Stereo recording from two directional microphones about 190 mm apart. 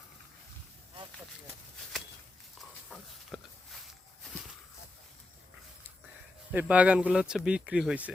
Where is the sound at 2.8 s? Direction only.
Centre (ahead or behind).